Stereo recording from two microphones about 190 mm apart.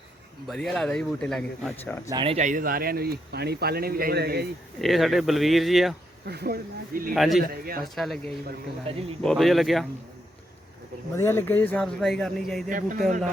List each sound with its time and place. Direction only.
0.4 s a man's voice: centre (ahead or behind)
2.0 s speech: 25° right (ahead or behind); by 4.4 s 55° right (ahead or behind)
4.8 s a man's voice: centre (ahead or behind)
6.2 s speech: 55° right (ahead or behind)
7.1 s a man's voice: centre (ahead or behind)
7.5 s speech: 50° right (ahead or behind)
7.8 s a man's voice: centre (ahead or behind)
11.1 s speech: 15° left (ahead or behind)
12.6 s speech: 45° right (ahead or behind)